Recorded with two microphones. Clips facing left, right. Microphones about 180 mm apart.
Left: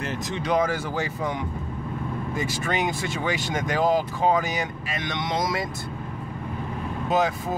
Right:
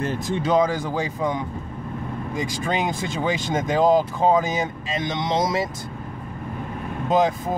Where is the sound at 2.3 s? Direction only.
15° right (ahead or behind).